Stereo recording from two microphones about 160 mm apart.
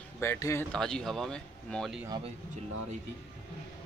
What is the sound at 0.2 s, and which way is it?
Speech, 15° left (ahead or behind).